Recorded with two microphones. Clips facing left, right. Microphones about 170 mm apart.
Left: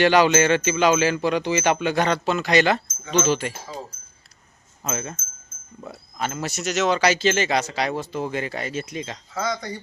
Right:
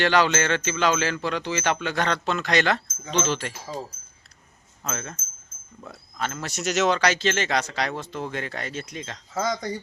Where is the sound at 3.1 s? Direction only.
5° left (ahead or behind).